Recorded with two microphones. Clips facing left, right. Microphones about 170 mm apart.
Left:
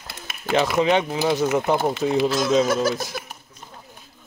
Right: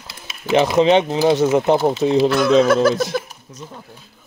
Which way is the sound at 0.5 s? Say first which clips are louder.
Right 5 dB; 25° right (ahead or behind).